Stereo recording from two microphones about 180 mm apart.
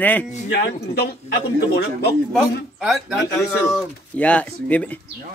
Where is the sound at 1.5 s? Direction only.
65° left (ahead or behind).